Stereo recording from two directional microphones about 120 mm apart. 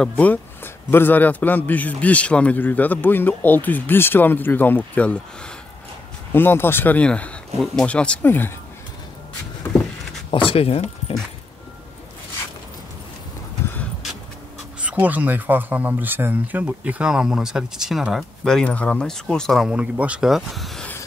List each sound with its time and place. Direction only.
0.0 s a man's voice: 15° left (ahead or behind)
10.3 s speech: 45° left (ahead or behind)
14.8 s speech: 10° right (ahead or behind)